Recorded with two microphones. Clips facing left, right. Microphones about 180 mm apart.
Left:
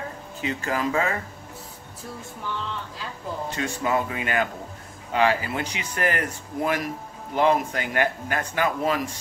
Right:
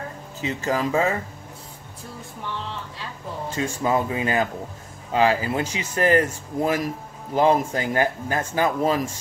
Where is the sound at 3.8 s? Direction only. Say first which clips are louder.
Right 3 dB; 30° right (ahead or behind).